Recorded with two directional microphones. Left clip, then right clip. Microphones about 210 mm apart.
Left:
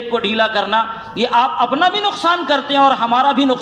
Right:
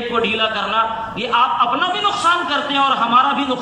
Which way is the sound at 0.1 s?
35° left (ahead or behind).